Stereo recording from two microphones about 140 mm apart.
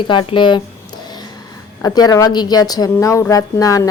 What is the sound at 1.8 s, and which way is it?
Speech, 25° left (ahead or behind).